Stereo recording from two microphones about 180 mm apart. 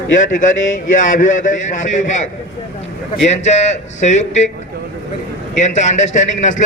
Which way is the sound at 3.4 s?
40° left (ahead or behind).